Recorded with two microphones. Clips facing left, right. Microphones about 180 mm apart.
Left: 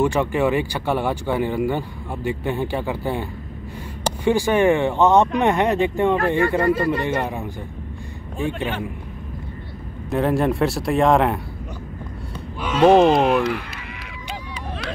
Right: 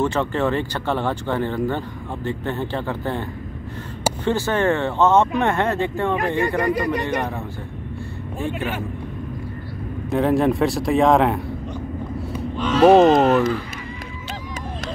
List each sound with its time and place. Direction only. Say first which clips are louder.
0.0 s speech: left 2 dB; 10° left (ahead or behind)
6.1 s speech: left 2 dB; 15° right (ahead or behind)
8.5 s speech: even; 10° right (ahead or behind)
10.0 s speech: right 2 dB; centre (ahead or behind)
13.0 s speech: right 2 dB; 10° left (ahead or behind)